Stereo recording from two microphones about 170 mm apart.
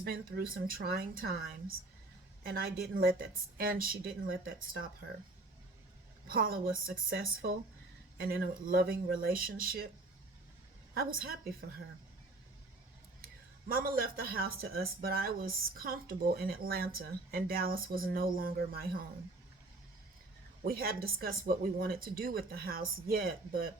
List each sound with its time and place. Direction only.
0.0 s speech: 65° right (ahead or behind)
6.2 s speech: 60° right (ahead or behind)
10.9 s speech: 60° right (ahead or behind)
13.7 s speech: 60° right (ahead or behind)
20.7 s speech: 60° right (ahead or behind)